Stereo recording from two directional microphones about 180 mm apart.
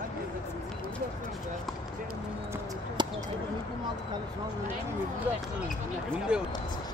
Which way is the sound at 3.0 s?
25° right (ahead or behind).